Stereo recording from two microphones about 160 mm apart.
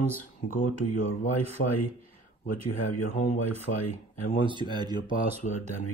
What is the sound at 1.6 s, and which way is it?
Speech, 90° left.